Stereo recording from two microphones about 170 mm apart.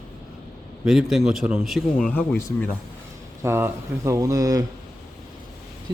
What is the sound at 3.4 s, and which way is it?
Speech, 15° right (ahead or behind).